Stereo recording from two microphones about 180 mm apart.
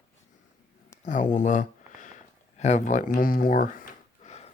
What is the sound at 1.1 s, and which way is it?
Speech, 45° left (ahead or behind).